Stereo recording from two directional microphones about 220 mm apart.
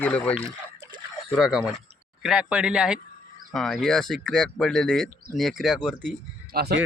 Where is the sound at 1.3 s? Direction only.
Centre (ahead or behind).